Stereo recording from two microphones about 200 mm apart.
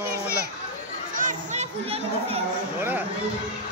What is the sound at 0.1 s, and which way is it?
Children playing, 50° right (ahead or behind).